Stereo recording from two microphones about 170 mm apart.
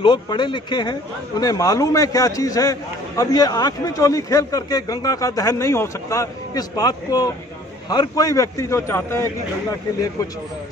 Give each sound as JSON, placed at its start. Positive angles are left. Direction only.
{"t": 0.0, "sound": "a man's voice", "side_deg": 25}